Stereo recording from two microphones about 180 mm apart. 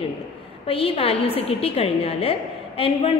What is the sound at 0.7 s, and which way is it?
A woman's voice, 30° left (ahead or behind).